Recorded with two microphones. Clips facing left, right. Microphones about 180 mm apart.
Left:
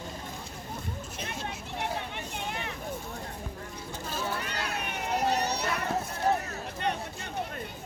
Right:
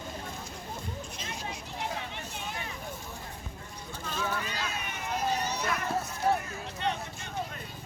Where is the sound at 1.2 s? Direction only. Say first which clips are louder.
Left 2 dB; 60° left (ahead or behind).